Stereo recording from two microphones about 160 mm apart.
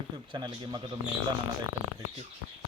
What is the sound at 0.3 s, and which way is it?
Speech, 25° right (ahead or behind).